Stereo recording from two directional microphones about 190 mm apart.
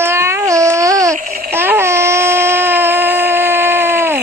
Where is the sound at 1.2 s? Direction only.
50° right (ahead or behind).